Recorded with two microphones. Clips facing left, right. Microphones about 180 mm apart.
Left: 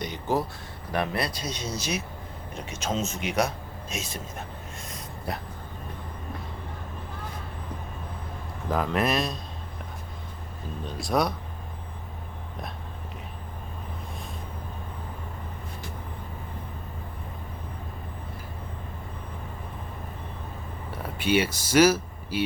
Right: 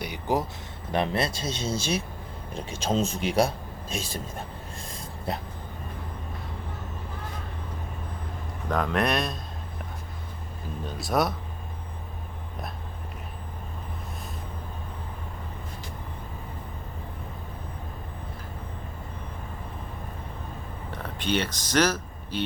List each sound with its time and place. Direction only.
0.0 s a sound: 15° right (ahead or behind)
0.9 s a man's voice: 25° right (ahead or behind)
4.9 s dog: 25° right (ahead or behind)
8.7 s speech: 5° left (ahead or behind)
10.8 s speech: centre (ahead or behind)
20.9 s speech: 10° left (ahead or behind)